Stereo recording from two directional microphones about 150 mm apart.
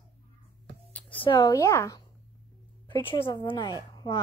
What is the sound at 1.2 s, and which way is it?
Speech, 30° left (ahead or behind).